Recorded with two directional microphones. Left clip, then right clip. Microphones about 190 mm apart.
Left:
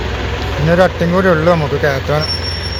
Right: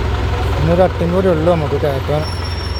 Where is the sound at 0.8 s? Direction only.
5° right (ahead or behind).